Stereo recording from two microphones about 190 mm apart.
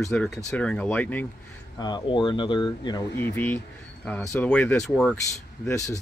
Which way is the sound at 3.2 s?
10° left (ahead or behind).